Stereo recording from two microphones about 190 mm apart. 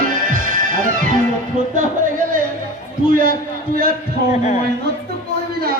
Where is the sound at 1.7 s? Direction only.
45° right (ahead or behind).